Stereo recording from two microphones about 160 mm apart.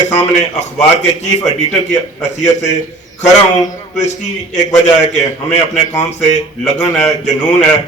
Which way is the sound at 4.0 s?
45° left (ahead or behind).